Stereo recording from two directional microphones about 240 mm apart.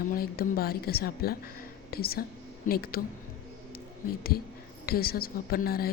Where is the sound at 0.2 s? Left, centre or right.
Left.